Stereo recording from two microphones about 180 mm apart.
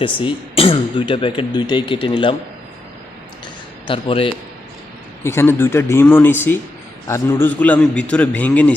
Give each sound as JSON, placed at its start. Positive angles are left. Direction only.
{"t": 0.0, "sound": "speech", "side_deg": 30}
{"t": 3.8, "sound": "speech", "side_deg": 30}
{"t": 5.2, "sound": "a man's voice", "side_deg": 15}